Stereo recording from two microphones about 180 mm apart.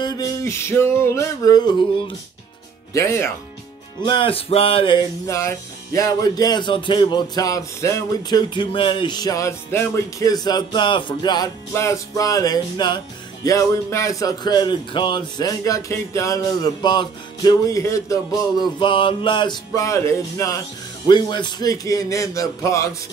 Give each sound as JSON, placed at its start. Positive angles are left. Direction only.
{"t": 0.0, "sound": "speech", "side_deg": 15}
{"t": 4.0, "sound": "speech", "side_deg": 25}